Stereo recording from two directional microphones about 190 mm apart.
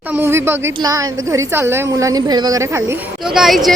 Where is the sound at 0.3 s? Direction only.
10° right (ahead or behind).